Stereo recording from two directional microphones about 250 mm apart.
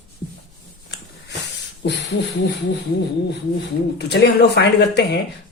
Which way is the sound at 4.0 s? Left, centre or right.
Left.